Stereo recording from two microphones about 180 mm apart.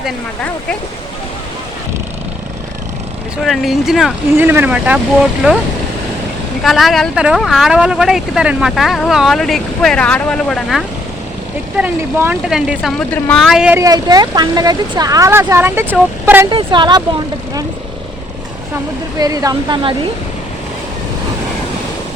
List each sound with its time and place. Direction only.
3.4 s speech: centre (ahead or behind)
4.4 s speech: 10° right (ahead or behind)
6.6 s speech: centre (ahead or behind)
11.8 s speech: 10° right (ahead or behind)
13.7 s speech: 20° right (ahead or behind)
16.5 s speech: 25° right (ahead or behind)
19.2 s speech: 20° right (ahead or behind)